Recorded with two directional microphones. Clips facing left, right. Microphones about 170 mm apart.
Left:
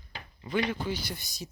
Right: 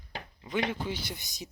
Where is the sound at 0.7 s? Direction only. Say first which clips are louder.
Left 2 dB; 25° right (ahead or behind).